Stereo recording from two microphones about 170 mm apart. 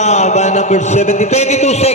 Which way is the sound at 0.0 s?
40° left (ahead or behind).